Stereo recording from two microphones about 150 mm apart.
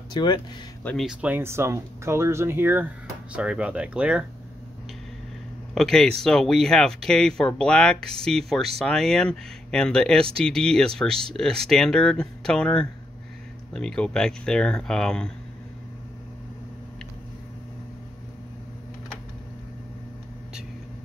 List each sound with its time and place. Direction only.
0.1 s speech: 30° left (ahead or behind)
0.8 s speech: centre (ahead or behind)
1.2 s speech: 15° right (ahead or behind)
5.8 s speech: 5° left (ahead or behind)